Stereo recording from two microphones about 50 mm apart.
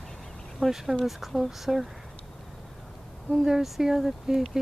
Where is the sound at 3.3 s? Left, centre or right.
Centre.